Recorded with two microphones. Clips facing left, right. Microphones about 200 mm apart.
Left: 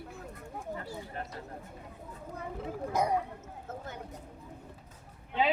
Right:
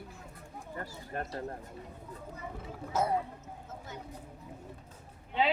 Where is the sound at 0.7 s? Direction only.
50° right (ahead or behind).